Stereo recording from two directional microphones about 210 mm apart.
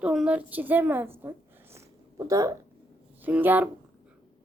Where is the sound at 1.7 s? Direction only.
15° right (ahead or behind).